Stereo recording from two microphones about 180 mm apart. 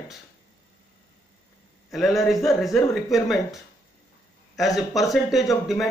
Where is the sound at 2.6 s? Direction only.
Centre (ahead or behind).